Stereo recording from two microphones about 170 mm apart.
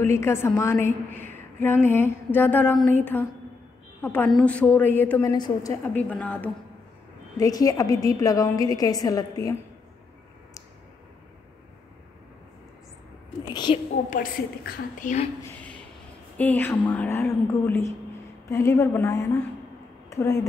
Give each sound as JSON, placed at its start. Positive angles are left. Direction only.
{"t": 0.0, "sound": "a woman's voice", "side_deg": 15}
{"t": 5.3, "sound": "a woman's voice", "side_deg": 20}
{"t": 5.9, "sound": "a woman's voice", "side_deg": 10}
{"t": 7.3, "sound": "a woman's voice", "side_deg": 20}
{"t": 13.5, "sound": "a woman's voice", "side_deg": 25}
{"t": 14.1, "sound": "a woman's voice", "side_deg": 55}
{"t": 16.3, "sound": "a woman's voice", "side_deg": 10}
{"t": 20.1, "sound": "a sound", "side_deg": 15}